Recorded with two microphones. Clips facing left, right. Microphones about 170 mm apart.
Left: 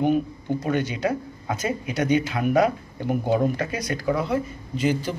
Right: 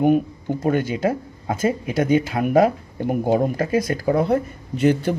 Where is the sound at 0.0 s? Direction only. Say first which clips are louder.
Right 4 dB; 50° right (ahead or behind).